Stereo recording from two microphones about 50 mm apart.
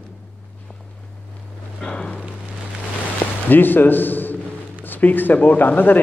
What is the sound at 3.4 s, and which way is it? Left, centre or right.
A man's voice, left.